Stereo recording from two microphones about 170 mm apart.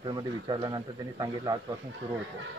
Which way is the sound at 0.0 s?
25° right (ahead or behind).